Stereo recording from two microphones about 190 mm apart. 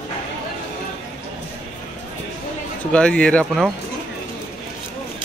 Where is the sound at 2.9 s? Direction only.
5° left (ahead or behind).